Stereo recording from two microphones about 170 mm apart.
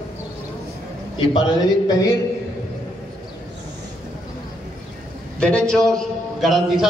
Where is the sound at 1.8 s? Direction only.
20° left (ahead or behind).